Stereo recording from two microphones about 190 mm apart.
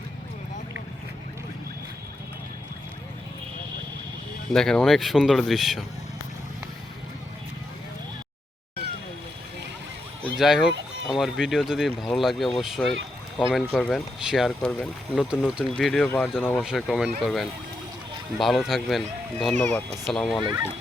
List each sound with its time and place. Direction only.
4.5 s speech: 5° left (ahead or behind)
10.3 s speech: centre (ahead or behind)
16.6 s speech: centre (ahead or behind)
20.4 s speech: 20° right (ahead or behind)